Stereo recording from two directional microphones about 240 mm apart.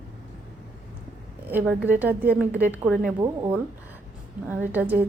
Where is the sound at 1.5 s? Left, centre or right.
Centre.